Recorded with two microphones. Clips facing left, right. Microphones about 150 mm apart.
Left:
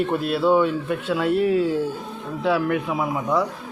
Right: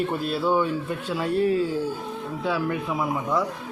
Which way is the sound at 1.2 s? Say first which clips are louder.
Left 2 dB; 85° left.